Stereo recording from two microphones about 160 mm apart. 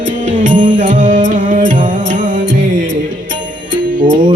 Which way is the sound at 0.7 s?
55° right (ahead or behind).